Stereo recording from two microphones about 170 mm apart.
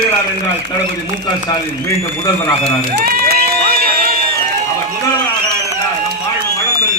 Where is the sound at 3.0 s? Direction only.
60° right (ahead or behind).